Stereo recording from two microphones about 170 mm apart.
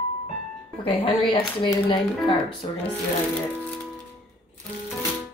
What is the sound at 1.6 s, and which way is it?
Speech, 25° left (ahead or behind).